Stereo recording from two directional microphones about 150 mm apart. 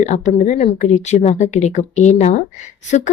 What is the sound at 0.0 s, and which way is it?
Speech, 50° left (ahead or behind).